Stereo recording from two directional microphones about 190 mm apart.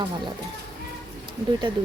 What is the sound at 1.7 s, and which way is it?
Speech, 25° right (ahead or behind).